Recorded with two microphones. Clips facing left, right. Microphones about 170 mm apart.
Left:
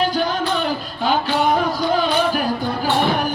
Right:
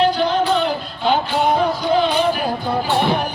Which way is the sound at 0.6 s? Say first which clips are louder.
Right 2 dB; 45° left (ahead or behind).